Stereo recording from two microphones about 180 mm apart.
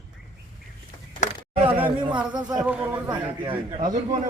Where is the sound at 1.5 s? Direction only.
30° right (ahead or behind).